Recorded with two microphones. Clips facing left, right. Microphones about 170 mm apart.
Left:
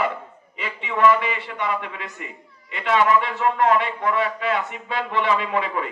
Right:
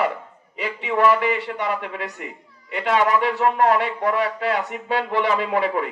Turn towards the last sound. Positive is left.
turn(degrees=-40)  # may be behind; listen again after turning